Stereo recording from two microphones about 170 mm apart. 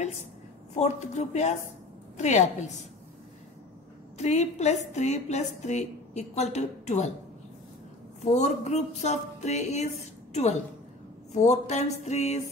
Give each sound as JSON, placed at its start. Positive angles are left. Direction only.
{"t": 0.7, "sound": "a woman's voice", "side_deg": 40}
{"t": 4.2, "sound": "a woman's voice", "side_deg": 40}
{"t": 8.2, "sound": "speech", "side_deg": 45}
{"t": 11.3, "sound": "a woman's voice", "side_deg": 45}